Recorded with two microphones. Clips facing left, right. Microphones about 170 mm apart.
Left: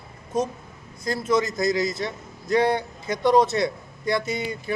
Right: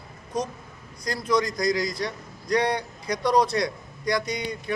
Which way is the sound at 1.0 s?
5° left (ahead or behind).